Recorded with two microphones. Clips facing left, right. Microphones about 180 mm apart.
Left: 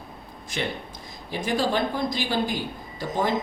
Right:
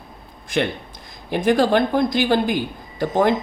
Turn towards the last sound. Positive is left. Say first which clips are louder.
# right 8 dB
turn(degrees=-60)  # may be behind; listen again after turning